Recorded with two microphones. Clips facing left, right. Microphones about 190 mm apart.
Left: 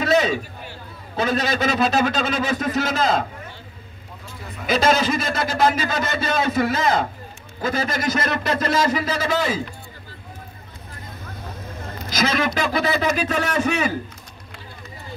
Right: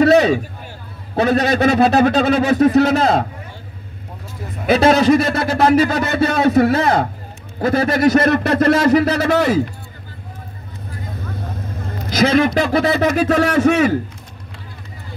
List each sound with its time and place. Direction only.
0.0 s a man's voice: 65° right (ahead or behind)
4.6 s a man's voice: 65° right (ahead or behind)
12.9 s a man's voice: 65° right (ahead or behind)